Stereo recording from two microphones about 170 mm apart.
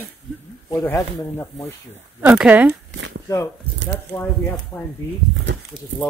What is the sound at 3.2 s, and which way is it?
Speech, 15° left (ahead or behind).